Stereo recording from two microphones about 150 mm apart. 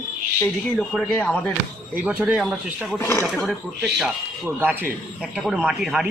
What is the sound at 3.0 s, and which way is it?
Speech, 20° left (ahead or behind).